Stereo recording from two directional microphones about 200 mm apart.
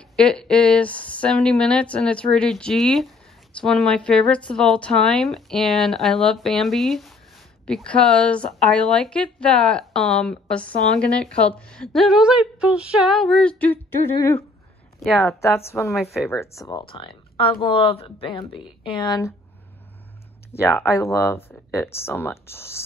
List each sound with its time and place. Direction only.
0.1 s a woman's voice: 5° left (ahead or behind)
15.9 s a woman's voice: centre (ahead or behind)
16.3 s speech: 15° left (ahead or behind)
16.8 s speech: 25° left (ahead or behind)
20.5 s speech: 15° left (ahead or behind)